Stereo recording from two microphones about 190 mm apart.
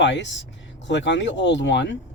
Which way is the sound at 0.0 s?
70° left (ahead or behind).